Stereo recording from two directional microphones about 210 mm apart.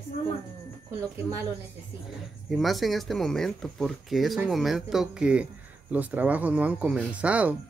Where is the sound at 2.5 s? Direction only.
Centre (ahead or behind).